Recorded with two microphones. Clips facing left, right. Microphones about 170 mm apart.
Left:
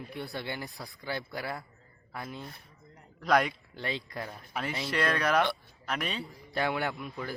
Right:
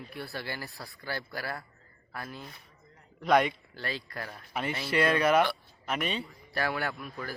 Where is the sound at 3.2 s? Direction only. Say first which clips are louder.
Right 2 dB; centre (ahead or behind).